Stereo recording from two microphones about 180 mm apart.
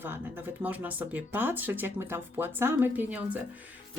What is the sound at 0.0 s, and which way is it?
Speech, 10° right (ahead or behind).